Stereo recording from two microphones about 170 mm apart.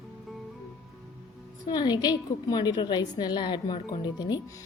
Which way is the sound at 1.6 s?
25° left (ahead or behind).